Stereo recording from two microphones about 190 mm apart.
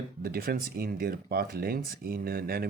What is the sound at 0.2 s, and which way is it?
Speech, 50° right (ahead or behind).